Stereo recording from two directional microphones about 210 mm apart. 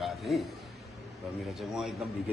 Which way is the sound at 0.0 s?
Centre (ahead or behind).